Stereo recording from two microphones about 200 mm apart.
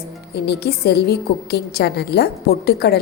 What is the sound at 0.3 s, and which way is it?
A woman's voice, 55° left (ahead or behind).